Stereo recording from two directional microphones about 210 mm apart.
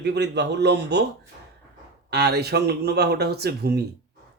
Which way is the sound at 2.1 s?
50° right (ahead or behind).